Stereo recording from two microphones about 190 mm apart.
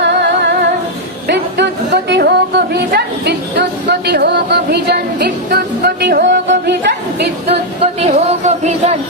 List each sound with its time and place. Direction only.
0.0 s music: 65° right (ahead or behind)
1.3 s speech: 65° right (ahead or behind)
8.0 s music: 35° right (ahead or behind)